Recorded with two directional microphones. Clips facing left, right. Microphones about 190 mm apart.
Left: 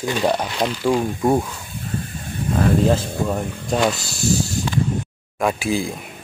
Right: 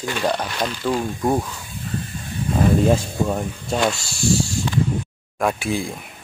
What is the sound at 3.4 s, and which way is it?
Speech, centre (ahead or behind).